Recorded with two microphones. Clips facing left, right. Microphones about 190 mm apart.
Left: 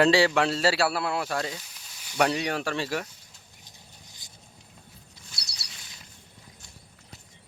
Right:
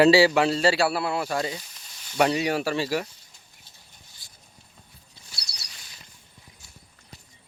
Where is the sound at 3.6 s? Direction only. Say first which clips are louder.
Left 5 dB; 20° left (ahead or behind).